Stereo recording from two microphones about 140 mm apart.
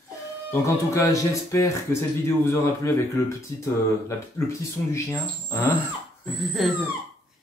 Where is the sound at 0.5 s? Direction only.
20° left (ahead or behind).